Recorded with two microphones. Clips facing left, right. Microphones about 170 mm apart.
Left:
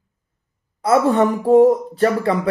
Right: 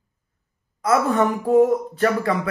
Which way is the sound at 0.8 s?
30° left (ahead or behind).